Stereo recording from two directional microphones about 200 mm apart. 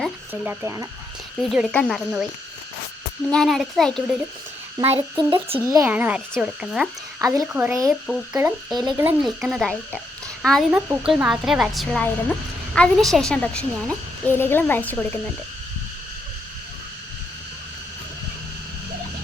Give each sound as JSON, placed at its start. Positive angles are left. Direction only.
{"t": 0.4, "sound": "speech", "side_deg": -15}
{"t": 1.5, "sound": "a child's voice", "side_deg": 0}
{"t": 3.2, "sound": "a child's voice", "side_deg": 5}
{"t": 4.8, "sound": "speech", "side_deg": -30}
{"t": 5.7, "sound": "a child's voice", "side_deg": -10}
{"t": 7.2, "sound": "speech", "side_deg": -15}
{"t": 8.0, "sound": "speech", "side_deg": -5}
{"t": 9.2, "sound": "a child's voice", "side_deg": 0}
{"t": 10.7, "sound": "a child's voice", "side_deg": -10}